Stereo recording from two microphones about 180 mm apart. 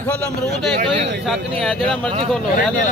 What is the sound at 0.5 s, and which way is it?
Speech, 70° right (ahead or behind).